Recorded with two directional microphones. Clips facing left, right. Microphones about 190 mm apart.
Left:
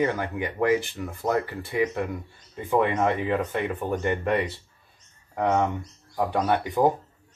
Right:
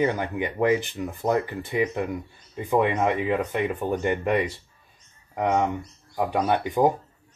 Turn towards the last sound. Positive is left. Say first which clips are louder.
# right 1 dB
turn(degrees=-15)  # may be behind; listen again after turning